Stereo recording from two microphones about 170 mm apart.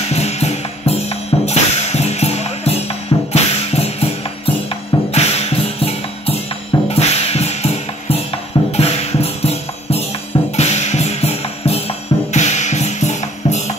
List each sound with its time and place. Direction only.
0.1 s music: 40° left (ahead or behind)